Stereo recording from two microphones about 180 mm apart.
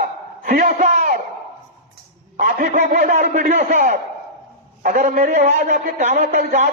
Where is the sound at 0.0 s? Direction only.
55° right (ahead or behind).